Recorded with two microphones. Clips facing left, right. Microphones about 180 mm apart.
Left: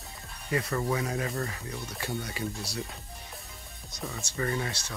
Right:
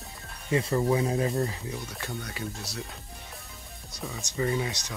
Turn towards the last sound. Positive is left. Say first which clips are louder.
# right 3 dB
turn(degrees=-15)  # may be behind; listen again after turning